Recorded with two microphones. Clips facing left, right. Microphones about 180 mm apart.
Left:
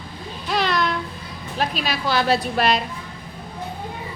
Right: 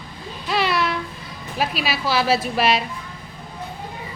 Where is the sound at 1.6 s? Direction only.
5° right (ahead or behind).